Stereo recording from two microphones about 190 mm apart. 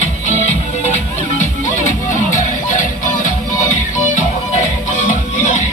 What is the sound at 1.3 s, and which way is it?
Music, 40° left (ahead or behind).